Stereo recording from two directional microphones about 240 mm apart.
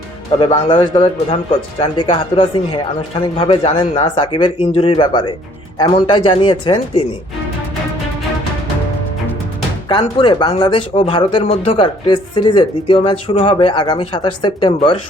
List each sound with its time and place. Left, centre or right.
0.3 s speech: centre
9.9 s speech: left